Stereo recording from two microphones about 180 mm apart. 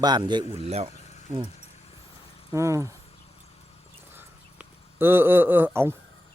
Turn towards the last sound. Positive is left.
turn(degrees=-10)  # may be behind; listen again after turning